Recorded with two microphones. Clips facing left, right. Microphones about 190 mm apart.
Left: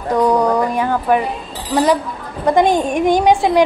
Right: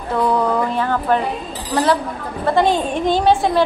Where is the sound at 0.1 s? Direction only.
15° left (ahead or behind).